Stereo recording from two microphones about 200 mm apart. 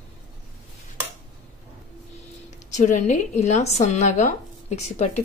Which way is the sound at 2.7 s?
35° left (ahead or behind).